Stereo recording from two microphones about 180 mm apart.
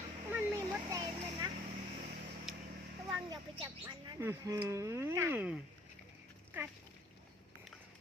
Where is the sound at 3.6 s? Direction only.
20° right (ahead or behind).